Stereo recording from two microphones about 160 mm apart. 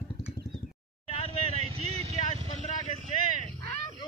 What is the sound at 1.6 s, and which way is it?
Vehicle, 40° right (ahead or behind).